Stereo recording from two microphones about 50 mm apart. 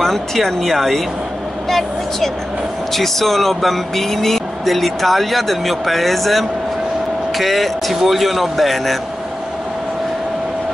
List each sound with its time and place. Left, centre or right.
0.0 s speech: centre